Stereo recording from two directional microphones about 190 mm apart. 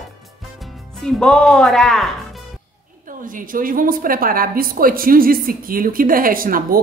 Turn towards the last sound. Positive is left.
turn(degrees=-50)  # may be behind; listen again after turning